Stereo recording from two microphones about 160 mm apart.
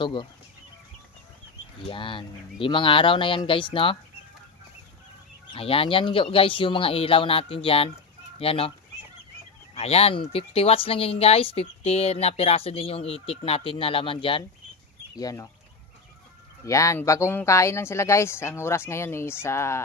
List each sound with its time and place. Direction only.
0.0 s speech: 30° left (ahead or behind)
1.8 s speech: 30° left (ahead or behind)
5.5 s speech: 35° left (ahead or behind)
9.8 s speech: 40° left (ahead or behind)
15.1 s speech: 20° left (ahead or behind)
16.6 s speech: 20° left (ahead or behind)